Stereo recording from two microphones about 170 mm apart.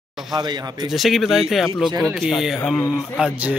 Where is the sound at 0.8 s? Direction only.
Centre (ahead or behind).